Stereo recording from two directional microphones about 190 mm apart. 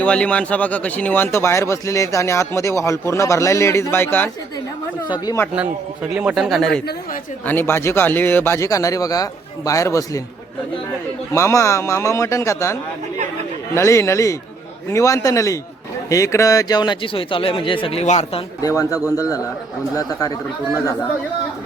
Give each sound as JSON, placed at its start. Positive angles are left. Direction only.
{"t": 0.0, "sound": "speech", "side_deg": 5}
{"t": 5.5, "sound": "a man's voice", "side_deg": -5}
{"t": 7.4, "sound": "speech", "side_deg": 10}
{"t": 11.3, "sound": "speech", "side_deg": 15}
{"t": 13.7, "sound": "a man's voice", "side_deg": 15}
{"t": 20.0, "sound": "speech", "side_deg": 20}